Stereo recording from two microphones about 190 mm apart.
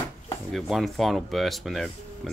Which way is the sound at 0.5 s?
Centre (ahead or behind).